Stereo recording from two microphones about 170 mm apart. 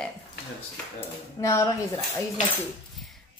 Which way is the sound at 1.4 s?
20° left (ahead or behind).